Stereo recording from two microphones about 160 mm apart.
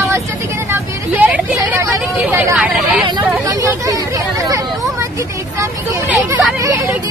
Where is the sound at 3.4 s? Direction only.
20° right (ahead or behind).